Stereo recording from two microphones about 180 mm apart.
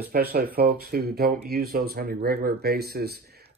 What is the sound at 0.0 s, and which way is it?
Speech, 55° right (ahead or behind).